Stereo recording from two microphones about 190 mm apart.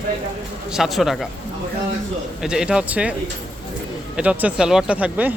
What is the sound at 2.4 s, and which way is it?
Speech, 5° right (ahead or behind).